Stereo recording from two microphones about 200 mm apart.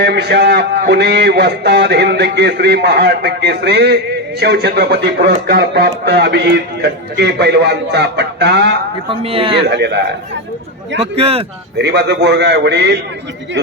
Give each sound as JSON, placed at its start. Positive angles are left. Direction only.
{"t": 0.0, "sound": "speech", "side_deg": -55}
{"t": 9.0, "sound": "a man's voice", "side_deg": -30}
{"t": 9.6, "sound": "speech", "side_deg": -60}
{"t": 11.0, "sound": "a man's voice", "side_deg": -30}
{"t": 11.8, "sound": "speech", "side_deg": -55}